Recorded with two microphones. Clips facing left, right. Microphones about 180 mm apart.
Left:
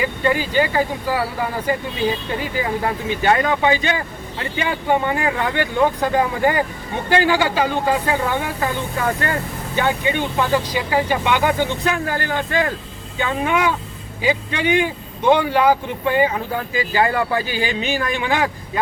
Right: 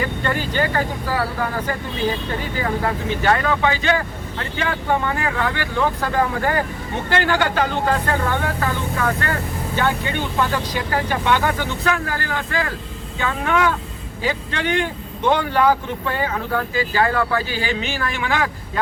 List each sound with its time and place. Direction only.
0.3 s speech: 10° left (ahead or behind)
3.2 s speech: 20° left (ahead or behind)
9.0 s speech: 25° left (ahead or behind)